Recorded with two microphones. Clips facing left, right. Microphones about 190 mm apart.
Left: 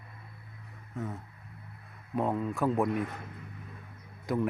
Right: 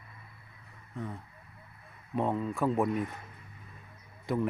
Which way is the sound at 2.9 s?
60° left (ahead or behind).